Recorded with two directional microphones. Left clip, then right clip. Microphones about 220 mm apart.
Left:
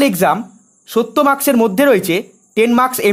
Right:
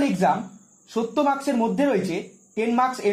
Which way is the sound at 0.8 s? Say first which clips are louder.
Left 9 dB; 50° left (ahead or behind).